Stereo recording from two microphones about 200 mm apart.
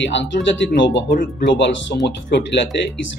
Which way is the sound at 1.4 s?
60° left (ahead or behind).